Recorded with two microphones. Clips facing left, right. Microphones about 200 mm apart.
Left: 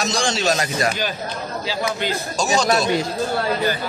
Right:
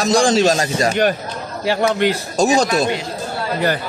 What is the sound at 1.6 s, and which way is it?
Speech, 65° right (ahead or behind).